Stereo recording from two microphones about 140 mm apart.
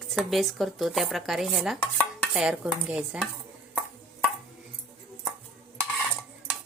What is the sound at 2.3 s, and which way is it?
Dishes, 5° right (ahead or behind).